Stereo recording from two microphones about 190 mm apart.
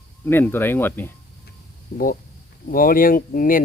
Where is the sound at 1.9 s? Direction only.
45° left (ahead or behind).